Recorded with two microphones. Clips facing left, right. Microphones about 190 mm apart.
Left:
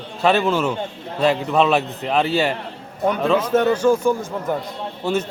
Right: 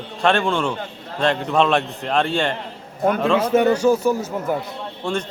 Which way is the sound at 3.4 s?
10° right (ahead or behind).